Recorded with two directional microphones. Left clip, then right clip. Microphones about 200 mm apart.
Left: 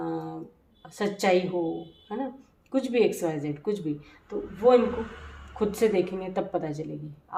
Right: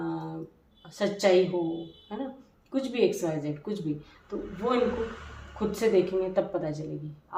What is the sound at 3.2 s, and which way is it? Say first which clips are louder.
Speech: left 2 dB; 45° left (ahead or behind).